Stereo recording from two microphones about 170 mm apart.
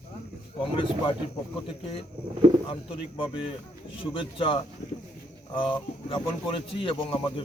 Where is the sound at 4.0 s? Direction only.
30° left (ahead or behind).